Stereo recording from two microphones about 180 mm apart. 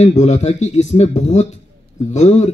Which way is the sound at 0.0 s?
40° left (ahead or behind).